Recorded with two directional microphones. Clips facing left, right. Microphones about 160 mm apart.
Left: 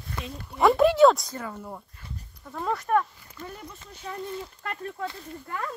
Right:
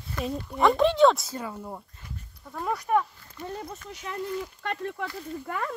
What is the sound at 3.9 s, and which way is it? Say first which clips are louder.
Speech: right 1 dB; 90° right.